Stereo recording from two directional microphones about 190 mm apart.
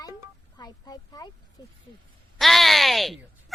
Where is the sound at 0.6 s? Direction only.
20° left (ahead or behind).